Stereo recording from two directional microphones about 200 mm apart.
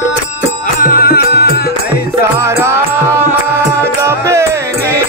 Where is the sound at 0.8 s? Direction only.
45° left (ahead or behind).